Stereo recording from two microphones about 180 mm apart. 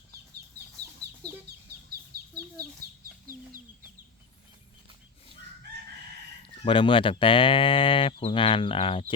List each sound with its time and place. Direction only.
0.6 s chicken: 65° right (ahead or behind)
2.1 s chicken: 60° right (ahead or behind)
6.7 s speech: 30° left (ahead or behind)